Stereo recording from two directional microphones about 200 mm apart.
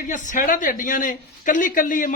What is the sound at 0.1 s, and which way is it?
A man's voice, 40° left (ahead or behind).